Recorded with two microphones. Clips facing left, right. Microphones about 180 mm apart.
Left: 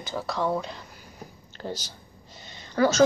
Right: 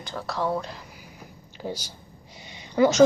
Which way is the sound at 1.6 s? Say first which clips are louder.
Right 1 dB; 10° right (ahead or behind).